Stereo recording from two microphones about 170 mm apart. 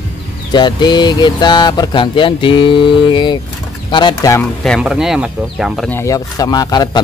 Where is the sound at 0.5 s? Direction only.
25° left (ahead or behind).